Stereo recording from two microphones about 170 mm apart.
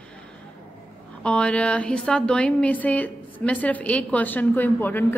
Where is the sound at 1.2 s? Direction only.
5° left (ahead or behind).